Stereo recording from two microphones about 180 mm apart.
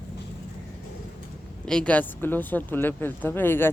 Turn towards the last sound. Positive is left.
turn(degrees=10)  # may be behind; listen again after turning